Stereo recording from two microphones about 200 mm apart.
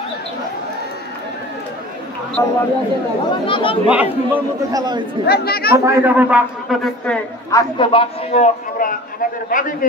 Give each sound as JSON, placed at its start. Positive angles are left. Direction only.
{"t": 2.4, "sound": "speech", "side_deg": 15}
{"t": 3.3, "sound": "a man's voice", "side_deg": 25}
{"t": 3.9, "sound": "a man's voice", "side_deg": -10}
{"t": 5.2, "sound": "speech", "side_deg": 50}
{"t": 5.9, "sound": "a man's voice", "side_deg": -10}
{"t": 7.5, "sound": "a man's voice", "side_deg": 25}